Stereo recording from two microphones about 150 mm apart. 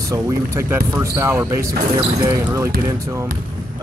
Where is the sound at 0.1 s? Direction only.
15° right (ahead or behind).